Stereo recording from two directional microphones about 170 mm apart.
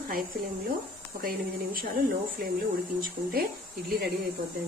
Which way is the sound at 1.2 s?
55° right (ahead or behind).